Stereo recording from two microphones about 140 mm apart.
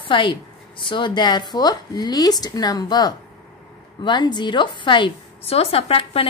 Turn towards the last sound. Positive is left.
turn(degrees=45)  # may be behind; listen again after turning